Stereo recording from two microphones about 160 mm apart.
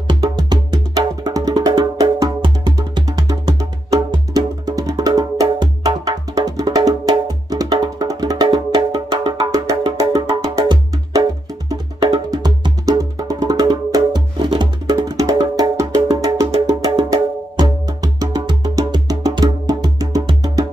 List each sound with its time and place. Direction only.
0.2 s music: 25° right (ahead or behind)
12.3 s music: 25° right (ahead or behind)